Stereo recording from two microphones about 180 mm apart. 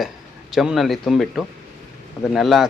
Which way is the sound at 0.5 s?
Centre (ahead or behind).